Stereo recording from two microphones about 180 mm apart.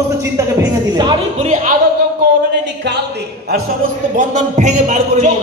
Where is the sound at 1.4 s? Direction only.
45° right (ahead or behind).